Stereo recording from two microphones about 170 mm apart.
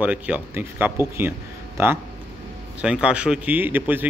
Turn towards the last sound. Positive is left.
turn(degrees=-10)  # may be behind; listen again after turning